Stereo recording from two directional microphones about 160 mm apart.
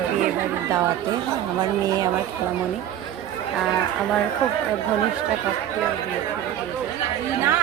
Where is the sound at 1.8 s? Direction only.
25° right (ahead or behind).